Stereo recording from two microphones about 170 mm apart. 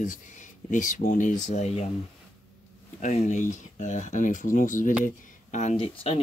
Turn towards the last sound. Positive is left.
turn(degrees=40)  # may be behind; listen again after turning